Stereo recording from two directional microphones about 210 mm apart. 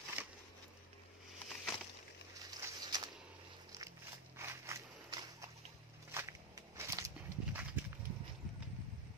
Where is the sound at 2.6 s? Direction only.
20° right (ahead or behind).